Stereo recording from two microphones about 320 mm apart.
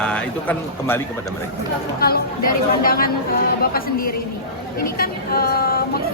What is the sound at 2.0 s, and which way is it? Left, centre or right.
Female singing, left.